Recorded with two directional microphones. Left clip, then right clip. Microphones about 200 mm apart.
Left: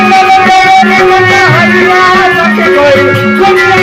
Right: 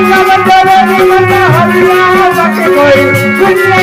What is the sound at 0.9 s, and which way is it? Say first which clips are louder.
Music: left 2 dB; 30° left (ahead or behind).